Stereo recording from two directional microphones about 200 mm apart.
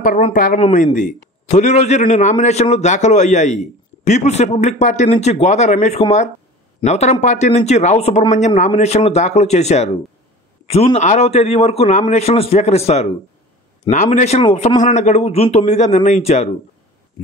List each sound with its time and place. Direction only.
0.0 s a man's voice: 45° left (ahead or behind)